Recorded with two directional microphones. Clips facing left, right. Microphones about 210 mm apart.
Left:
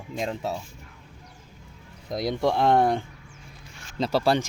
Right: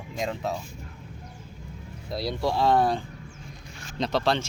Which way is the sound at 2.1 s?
20° left (ahead or behind).